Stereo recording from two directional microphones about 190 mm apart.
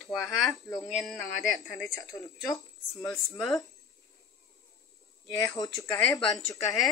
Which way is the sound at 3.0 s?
15° left (ahead or behind).